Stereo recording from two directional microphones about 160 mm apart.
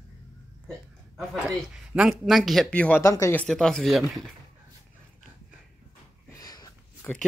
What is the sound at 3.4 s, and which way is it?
Speech, 5° left (ahead or behind).